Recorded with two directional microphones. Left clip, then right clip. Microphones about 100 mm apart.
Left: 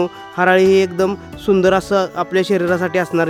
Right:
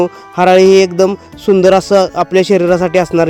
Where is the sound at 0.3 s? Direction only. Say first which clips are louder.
Right 6 dB; 40° right (ahead or behind).